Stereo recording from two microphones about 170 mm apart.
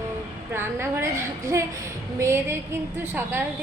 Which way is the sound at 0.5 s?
15° right (ahead or behind).